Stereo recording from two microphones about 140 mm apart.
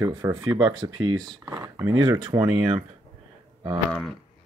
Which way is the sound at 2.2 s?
35° right (ahead or behind).